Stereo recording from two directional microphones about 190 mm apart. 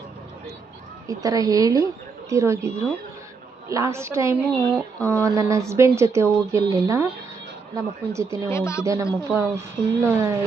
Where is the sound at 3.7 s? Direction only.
15° right (ahead or behind).